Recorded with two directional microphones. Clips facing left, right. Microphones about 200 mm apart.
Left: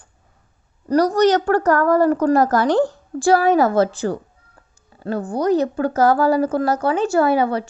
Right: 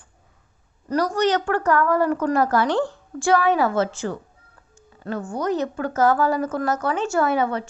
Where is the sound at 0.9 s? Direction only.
40° left (ahead or behind).